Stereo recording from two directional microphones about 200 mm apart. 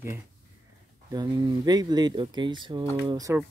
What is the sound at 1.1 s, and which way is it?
Speech, 20° right (ahead or behind).